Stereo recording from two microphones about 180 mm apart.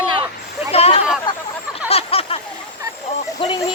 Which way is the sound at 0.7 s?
35° left (ahead or behind).